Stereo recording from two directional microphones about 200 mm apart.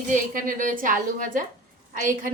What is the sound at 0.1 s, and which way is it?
A woman's voice, 40° right (ahead or behind).